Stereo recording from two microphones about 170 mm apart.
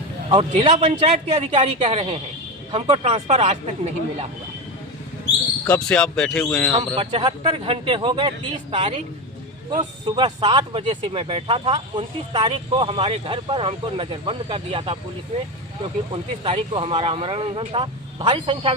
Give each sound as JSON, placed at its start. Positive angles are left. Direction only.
{"t": 0.6, "sound": "speech", "side_deg": -35}
{"t": 5.6, "sound": "speech", "side_deg": 5}
{"t": 6.7, "sound": "speech", "side_deg": -35}
{"t": 10.1, "sound": "speech", "side_deg": -25}
{"t": 16.1, "sound": "speech", "side_deg": -30}